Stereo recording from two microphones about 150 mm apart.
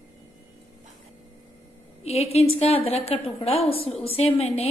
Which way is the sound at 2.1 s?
45° left (ahead or behind).